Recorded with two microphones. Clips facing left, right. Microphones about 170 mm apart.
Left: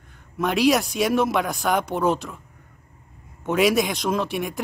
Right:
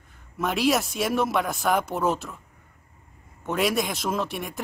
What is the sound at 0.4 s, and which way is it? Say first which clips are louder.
Speech: left 4 dB; centre (ahead or behind).